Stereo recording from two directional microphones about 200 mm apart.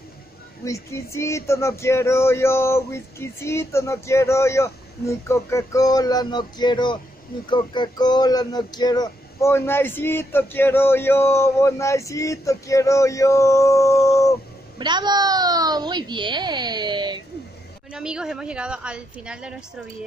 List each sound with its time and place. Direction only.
0.7 s speech: 15° left (ahead or behind)
14.8 s speech: 20° right (ahead or behind)
17.9 s a woman's voice: 5° right (ahead or behind)